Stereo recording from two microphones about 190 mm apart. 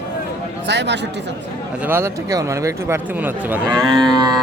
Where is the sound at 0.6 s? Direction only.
65° right (ahead or behind).